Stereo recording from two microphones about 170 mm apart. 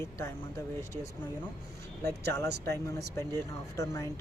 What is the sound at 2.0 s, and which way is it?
Speech, 15° left (ahead or behind).